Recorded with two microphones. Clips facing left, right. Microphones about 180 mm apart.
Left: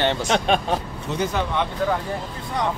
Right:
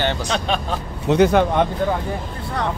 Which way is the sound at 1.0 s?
70° right (ahead or behind).